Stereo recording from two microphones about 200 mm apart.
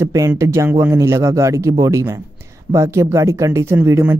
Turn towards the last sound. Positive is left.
turn(degrees=-10)  # may be behind; listen again after turning